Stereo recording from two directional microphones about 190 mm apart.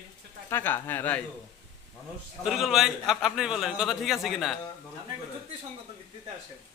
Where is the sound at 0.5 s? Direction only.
10° left (ahead or behind).